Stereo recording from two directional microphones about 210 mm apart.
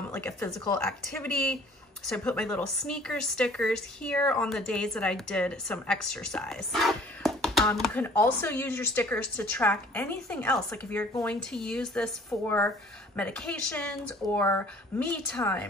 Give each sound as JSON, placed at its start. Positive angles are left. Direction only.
{"t": 0.1, "sound": "speech", "side_deg": 10}